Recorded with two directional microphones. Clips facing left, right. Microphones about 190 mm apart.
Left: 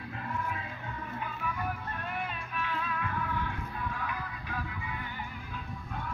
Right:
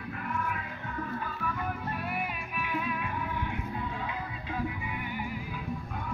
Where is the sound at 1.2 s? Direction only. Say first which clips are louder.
Right 1 dB; 10° left (ahead or behind).